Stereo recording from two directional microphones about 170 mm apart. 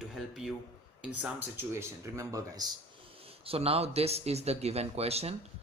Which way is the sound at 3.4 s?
35° right (ahead or behind).